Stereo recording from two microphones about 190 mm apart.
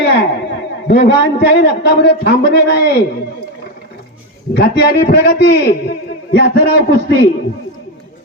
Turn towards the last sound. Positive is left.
turn(degrees=60)  # may be behind; listen again after turning